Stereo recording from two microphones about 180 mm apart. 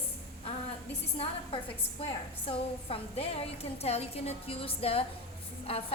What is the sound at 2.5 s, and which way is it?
A woman's voice, 30° left (ahead or behind).